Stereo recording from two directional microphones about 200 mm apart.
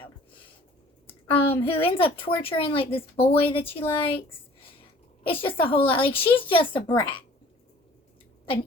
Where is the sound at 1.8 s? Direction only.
25° left (ahead or behind).